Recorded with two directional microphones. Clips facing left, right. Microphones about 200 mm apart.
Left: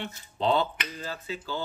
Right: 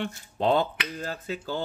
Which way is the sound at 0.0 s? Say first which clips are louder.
Right 2 dB; 50° right (ahead or behind).